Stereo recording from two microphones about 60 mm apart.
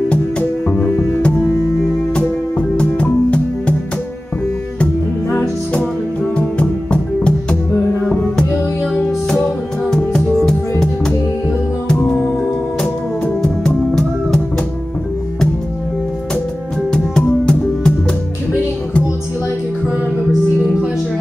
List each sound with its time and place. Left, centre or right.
0.1 s music: left
2.8 s music: left
6.3 s music: centre
8.9 s music: centre
13.4 s music: centre
16.9 s music: centre